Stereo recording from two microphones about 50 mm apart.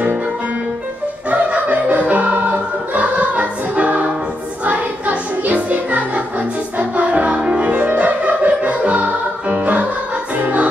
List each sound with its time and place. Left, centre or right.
1.3 s music: right